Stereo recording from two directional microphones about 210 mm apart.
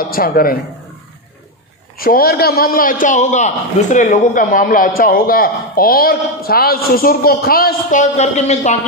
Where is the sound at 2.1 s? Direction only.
45° left (ahead or behind).